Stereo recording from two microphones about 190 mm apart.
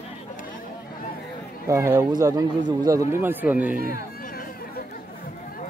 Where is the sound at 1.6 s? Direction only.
15° right (ahead or behind).